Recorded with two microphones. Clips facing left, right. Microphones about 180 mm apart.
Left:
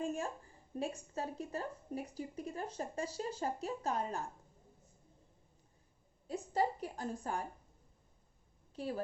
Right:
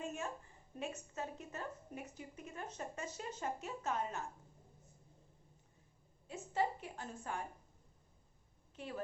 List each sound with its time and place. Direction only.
0.0 s a sound: 35° left (ahead or behind)
0.8 s a woman's voice: 35° left (ahead or behind)
6.2 s a woman's voice: 40° left (ahead or behind)
8.7 s a woman's voice: 35° left (ahead or behind)